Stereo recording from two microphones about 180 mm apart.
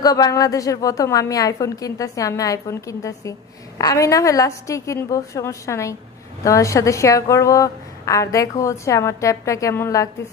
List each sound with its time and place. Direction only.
0.0 s a woman's voice: 20° left (ahead or behind)